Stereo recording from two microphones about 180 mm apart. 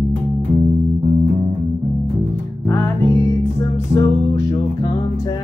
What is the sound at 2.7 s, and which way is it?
Music, 15° left (ahead or behind).